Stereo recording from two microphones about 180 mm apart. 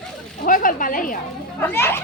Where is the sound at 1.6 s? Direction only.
15° left (ahead or behind).